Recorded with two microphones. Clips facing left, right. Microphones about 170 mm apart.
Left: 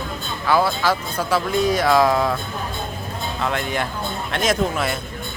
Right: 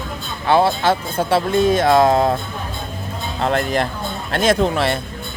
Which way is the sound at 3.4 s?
35° right (ahead or behind).